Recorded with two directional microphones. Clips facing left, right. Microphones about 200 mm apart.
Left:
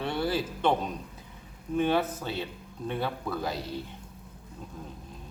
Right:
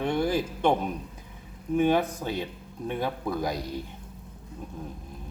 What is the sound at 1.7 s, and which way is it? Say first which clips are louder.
Speech: right 3 dB; 10° right (ahead or behind).